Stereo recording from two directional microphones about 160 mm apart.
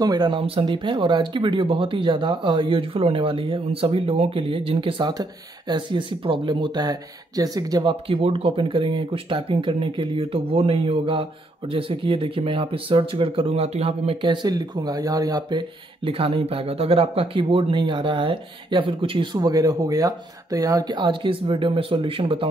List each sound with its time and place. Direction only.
0.0 s speech: 25° right (ahead or behind)
7.9 s speech: 35° right (ahead or behind)
16.1 s speech: 35° right (ahead or behind)